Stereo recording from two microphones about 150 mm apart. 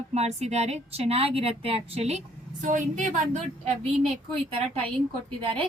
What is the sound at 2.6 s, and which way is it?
Speech, 60° right (ahead or behind).